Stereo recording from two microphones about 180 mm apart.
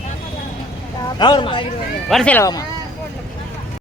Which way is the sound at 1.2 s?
25° left (ahead or behind).